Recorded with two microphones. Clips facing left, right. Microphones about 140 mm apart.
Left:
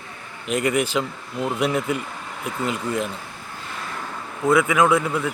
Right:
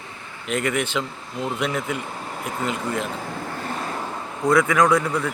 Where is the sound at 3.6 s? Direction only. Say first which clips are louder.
Right 3 dB; 45° right (ahead or behind).